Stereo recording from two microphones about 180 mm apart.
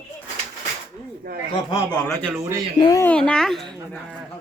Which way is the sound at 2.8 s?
20° left (ahead or behind).